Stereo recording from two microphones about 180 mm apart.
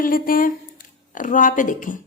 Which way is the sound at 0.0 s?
50° left (ahead or behind).